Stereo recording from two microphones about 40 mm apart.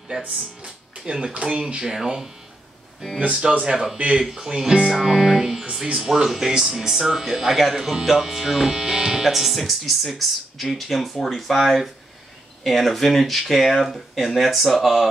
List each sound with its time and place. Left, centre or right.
0.6 s speech: right
1.9 s speech: centre
3.6 s speech: centre